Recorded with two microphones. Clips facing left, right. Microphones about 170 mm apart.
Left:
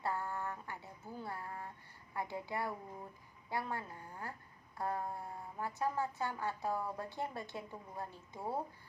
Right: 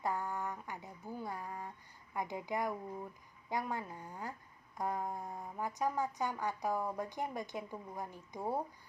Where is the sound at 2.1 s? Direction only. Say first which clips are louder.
Right 2 dB; 15° right (ahead or behind).